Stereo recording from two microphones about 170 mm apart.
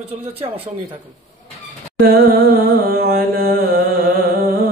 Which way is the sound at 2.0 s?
65° right (ahead or behind).